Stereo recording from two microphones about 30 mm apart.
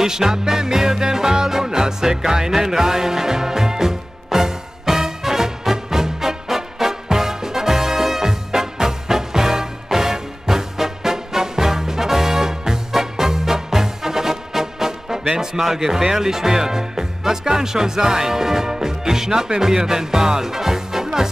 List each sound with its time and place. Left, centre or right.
0.0 s music: centre